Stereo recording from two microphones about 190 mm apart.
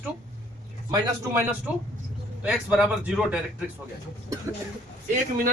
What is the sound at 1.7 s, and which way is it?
A man's voice, 10° right (ahead or behind).